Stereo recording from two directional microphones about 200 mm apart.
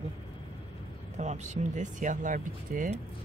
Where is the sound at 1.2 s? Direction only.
35° right (ahead or behind).